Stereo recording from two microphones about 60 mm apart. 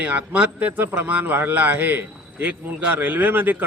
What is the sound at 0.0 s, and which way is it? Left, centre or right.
A man's voice, right.